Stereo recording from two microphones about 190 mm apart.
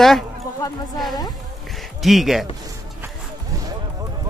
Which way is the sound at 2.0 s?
Centre (ahead or behind).